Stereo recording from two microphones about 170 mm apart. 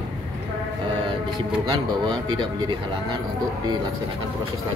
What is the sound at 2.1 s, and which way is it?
Speech, 25° right (ahead or behind).